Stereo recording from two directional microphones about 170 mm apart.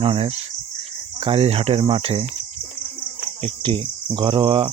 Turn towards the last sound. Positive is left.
turn(degrees=-30)  # may be behind; listen again after turning